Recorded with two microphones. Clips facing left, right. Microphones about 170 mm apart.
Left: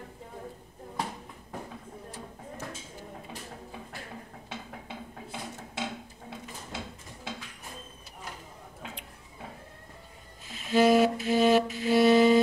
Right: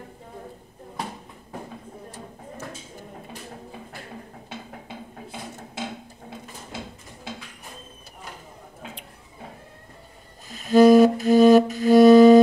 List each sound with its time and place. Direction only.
10.5 s music: 40° right (ahead or behind)